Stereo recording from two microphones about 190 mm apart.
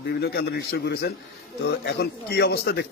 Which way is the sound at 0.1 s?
55° left (ahead or behind).